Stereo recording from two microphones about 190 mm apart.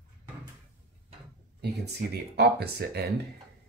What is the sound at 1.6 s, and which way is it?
Speech, 60° right (ahead or behind).